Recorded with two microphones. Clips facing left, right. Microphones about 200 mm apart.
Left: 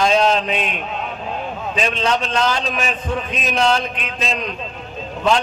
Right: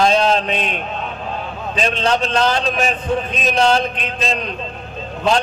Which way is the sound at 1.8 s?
35° right (ahead or behind).